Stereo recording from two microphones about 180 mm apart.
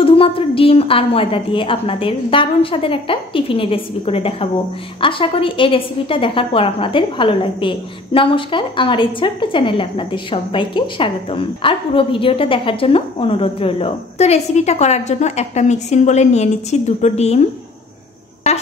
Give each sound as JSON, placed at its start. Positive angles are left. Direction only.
{"t": 0.0, "sound": "a woman's voice", "side_deg": 30}